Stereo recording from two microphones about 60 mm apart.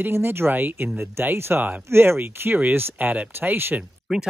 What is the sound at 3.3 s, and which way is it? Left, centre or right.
Speech, right.